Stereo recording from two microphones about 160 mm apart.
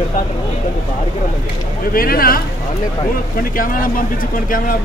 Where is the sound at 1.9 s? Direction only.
65° left (ahead or behind).